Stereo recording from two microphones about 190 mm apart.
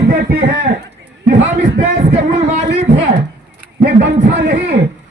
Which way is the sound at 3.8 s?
50° right (ahead or behind).